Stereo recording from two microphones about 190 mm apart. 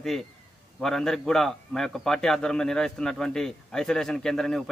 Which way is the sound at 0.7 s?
Centre (ahead or behind).